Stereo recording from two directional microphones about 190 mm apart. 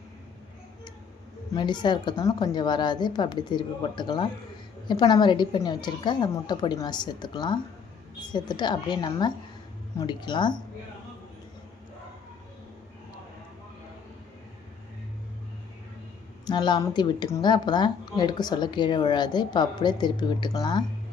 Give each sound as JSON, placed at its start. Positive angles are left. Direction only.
{"t": 1.5, "sound": "speech", "side_deg": 25}
{"t": 16.5, "sound": "speech", "side_deg": 25}